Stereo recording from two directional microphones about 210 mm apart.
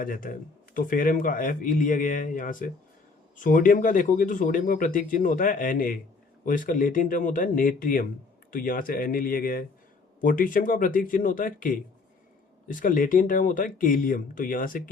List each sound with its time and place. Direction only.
0.0 s speech: 40° left (ahead or behind)